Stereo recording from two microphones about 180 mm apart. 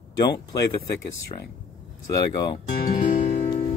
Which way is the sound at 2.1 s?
20° left (ahead or behind).